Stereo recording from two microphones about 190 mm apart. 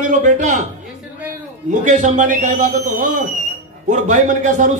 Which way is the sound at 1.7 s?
40° right (ahead or behind).